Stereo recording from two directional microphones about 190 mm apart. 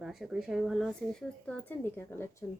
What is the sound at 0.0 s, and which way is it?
A woman's voice, centre (ahead or behind).